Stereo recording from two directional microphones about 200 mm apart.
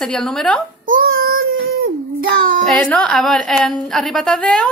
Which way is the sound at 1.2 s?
50° right (ahead or behind).